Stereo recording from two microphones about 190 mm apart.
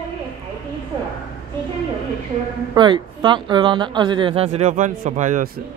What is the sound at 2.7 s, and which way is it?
A woman's voice, 25° right (ahead or behind).